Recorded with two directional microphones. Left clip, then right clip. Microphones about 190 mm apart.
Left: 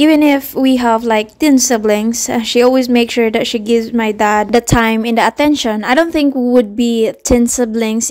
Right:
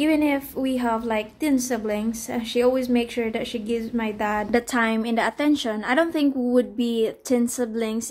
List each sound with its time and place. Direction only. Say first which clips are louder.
0.0 s a woman's voice: left 11 dB; 50° left (ahead or behind)